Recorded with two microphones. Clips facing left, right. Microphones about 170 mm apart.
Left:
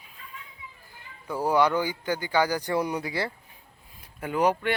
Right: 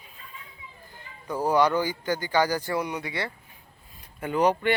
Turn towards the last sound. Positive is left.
turn(degrees=5)  # may be behind; listen again after turning